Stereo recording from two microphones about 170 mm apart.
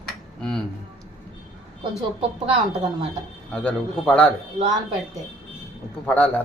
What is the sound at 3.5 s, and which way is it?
Speech, 10° left (ahead or behind).